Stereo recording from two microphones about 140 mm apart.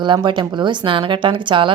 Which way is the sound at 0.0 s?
35° right (ahead or behind).